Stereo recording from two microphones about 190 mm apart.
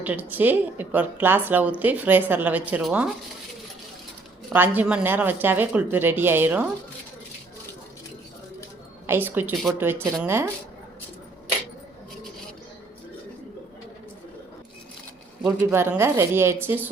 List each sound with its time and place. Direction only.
0.0 s a woman's voice: 10° right (ahead or behind)
4.4 s a woman's voice: 10° right (ahead or behind)
9.0 s a woman's voice: 10° right (ahead or behind)
15.4 s a woman's voice: 10° right (ahead or behind)